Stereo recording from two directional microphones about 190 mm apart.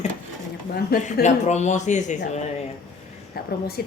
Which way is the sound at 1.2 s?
35° left (ahead or behind).